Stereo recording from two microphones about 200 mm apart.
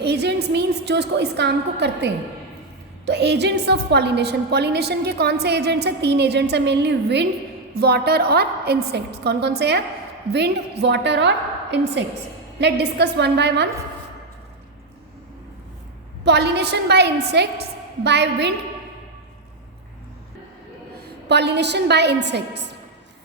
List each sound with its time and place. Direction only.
0.0 s a woman's voice: 55° right (ahead or behind)
16.2 s a woman's voice: 55° right (ahead or behind)
21.0 s a woman's voice: 55° right (ahead or behind)